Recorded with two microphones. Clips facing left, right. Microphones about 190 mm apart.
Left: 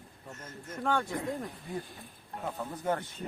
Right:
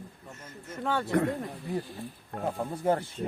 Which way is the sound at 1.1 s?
70° right (ahead or behind).